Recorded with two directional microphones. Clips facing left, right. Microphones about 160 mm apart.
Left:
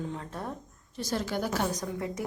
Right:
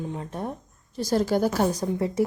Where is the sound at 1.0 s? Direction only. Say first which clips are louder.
Right 8 dB; 40° right (ahead or behind).